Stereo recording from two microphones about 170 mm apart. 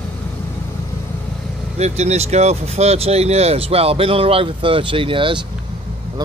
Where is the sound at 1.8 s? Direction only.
40° right (ahead or behind).